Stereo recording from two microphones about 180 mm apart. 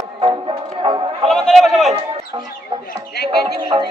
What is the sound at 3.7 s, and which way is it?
Music, 30° right (ahead or behind).